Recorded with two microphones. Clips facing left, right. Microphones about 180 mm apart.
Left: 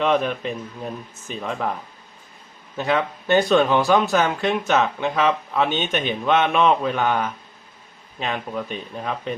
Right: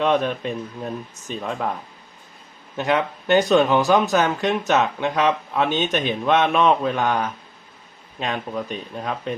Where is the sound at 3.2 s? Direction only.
20° right (ahead or behind).